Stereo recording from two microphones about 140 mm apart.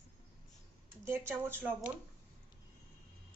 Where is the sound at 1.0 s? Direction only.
15° right (ahead or behind).